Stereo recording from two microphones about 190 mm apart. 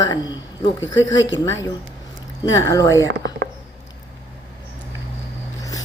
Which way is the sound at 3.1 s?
65° right (ahead or behind).